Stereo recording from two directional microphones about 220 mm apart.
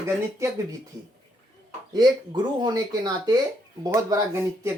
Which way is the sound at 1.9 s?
20° right (ahead or behind).